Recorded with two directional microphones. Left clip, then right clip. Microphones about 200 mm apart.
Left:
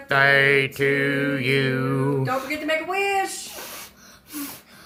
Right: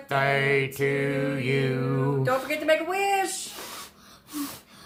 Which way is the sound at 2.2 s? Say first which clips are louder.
Even; 50° right (ahead or behind).